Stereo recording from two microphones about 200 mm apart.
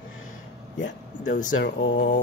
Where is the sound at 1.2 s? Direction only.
40° left (ahead or behind).